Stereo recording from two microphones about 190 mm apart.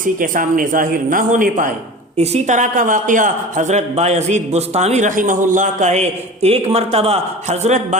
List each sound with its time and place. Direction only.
0.0 s a woman's voice: 45° right (ahead or behind)